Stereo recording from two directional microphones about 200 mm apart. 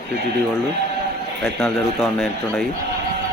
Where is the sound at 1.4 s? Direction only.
Centre (ahead or behind).